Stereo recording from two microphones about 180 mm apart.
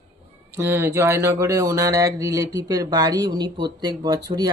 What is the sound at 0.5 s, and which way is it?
Speech, 15° right (ahead or behind).